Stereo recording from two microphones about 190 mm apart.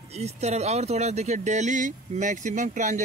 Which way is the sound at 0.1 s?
35° right (ahead or behind).